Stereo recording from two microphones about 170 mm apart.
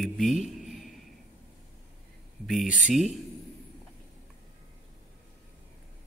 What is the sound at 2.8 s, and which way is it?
Speech, centre (ahead or behind).